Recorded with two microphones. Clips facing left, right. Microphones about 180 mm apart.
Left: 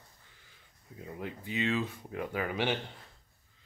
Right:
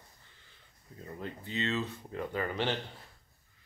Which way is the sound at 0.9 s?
10° left (ahead or behind).